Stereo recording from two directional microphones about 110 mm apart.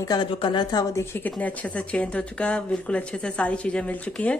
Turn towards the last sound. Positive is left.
turn(degrees=10)  # may be behind; listen again after turning